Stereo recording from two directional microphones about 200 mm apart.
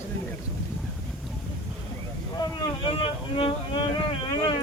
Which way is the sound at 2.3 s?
25° left (ahead or behind).